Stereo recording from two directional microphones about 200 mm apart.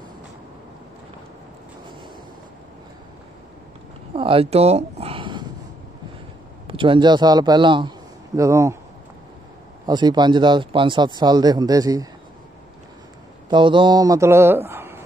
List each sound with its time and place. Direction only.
4.1 s a sound: 25° right (ahead or behind)
6.7 s speech: 25° right (ahead or behind)
9.8 s speech: 20° right (ahead or behind)
13.5 s speech: 25° right (ahead or behind)